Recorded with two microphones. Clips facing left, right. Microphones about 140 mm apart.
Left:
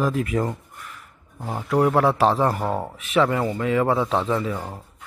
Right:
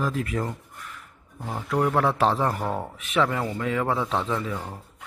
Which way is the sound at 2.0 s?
5° left (ahead or behind).